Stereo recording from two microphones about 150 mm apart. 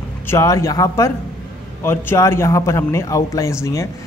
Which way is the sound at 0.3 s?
20° left (ahead or behind).